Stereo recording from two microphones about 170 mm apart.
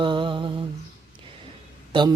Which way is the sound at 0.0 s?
30° right (ahead or behind).